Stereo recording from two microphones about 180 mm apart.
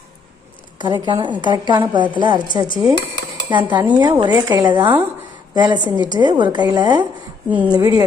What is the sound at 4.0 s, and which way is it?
A woman's voice, 25° right (ahead or behind).